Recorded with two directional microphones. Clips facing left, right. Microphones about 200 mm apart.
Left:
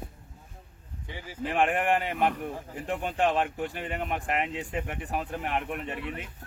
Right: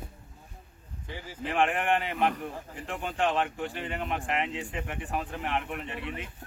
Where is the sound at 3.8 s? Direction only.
40° left (ahead or behind).